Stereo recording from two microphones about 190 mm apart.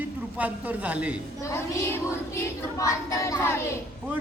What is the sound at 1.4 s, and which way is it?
Child singing, 15° left (ahead or behind).